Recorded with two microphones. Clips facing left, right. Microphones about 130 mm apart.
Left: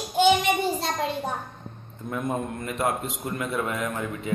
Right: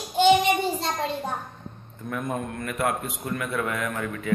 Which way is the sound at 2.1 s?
25° left (ahead or behind).